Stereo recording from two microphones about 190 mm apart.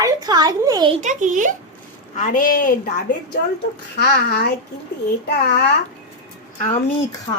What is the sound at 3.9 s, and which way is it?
A child's voice, 55° left (ahead or behind).